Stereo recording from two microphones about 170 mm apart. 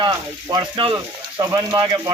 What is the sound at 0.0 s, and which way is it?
Speech, 25° right (ahead or behind).